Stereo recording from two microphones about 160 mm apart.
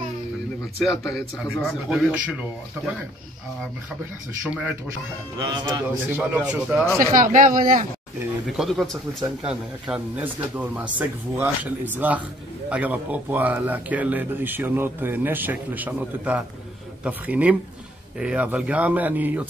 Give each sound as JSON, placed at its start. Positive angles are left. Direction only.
{"t": 0.7, "sound": "speech", "side_deg": 0}
{"t": 4.4, "sound": "speech", "side_deg": -5}
{"t": 5.4, "sound": "a man's voice", "side_deg": -20}
{"t": 6.1, "sound": "speech", "side_deg": -10}
{"t": 7.0, "sound": "speech", "side_deg": -60}
{"t": 8.5, "sound": "speech", "side_deg": 0}